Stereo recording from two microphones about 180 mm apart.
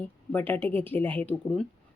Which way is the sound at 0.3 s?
10° left (ahead or behind).